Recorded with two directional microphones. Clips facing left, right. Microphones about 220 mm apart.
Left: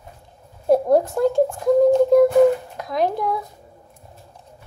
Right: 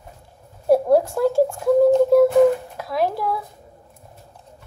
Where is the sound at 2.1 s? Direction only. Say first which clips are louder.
Left 1 dB; 5° right (ahead or behind).